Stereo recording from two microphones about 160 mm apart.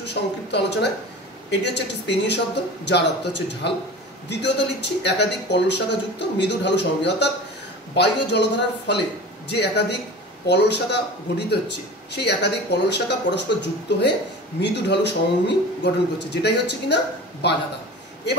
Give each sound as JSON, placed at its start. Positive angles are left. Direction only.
{"t": 0.0, "sound": "speech", "side_deg": 90}